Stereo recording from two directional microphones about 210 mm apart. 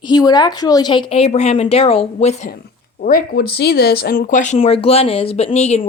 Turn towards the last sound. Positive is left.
turn(degrees=30)  # may be behind; listen again after turning